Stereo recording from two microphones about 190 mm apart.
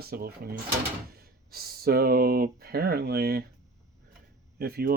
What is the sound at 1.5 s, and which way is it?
Speech, 55° right (ahead or behind).